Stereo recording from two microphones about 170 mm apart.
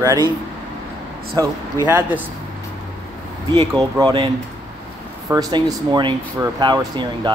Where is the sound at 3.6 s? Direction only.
20° right (ahead or behind).